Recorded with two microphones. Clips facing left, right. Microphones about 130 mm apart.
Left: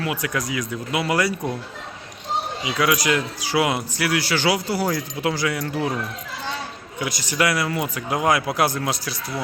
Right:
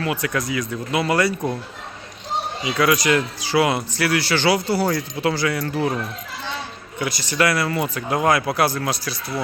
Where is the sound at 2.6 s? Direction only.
10° left (ahead or behind).